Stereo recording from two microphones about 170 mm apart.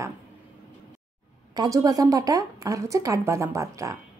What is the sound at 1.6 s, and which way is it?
A woman's voice, 20° right (ahead or behind).